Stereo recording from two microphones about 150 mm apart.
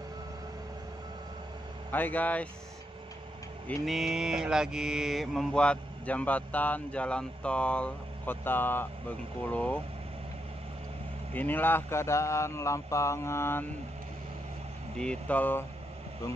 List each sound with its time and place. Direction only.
1.9 s mantra: 10° left (ahead or behind)
3.6 s mantra: centre (ahead or behind)
11.3 s mantra: 10° left (ahead or behind)
15.0 s mantra: 10° left (ahead or behind)